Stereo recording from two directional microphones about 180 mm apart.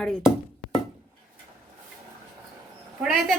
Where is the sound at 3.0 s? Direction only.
5° right (ahead or behind).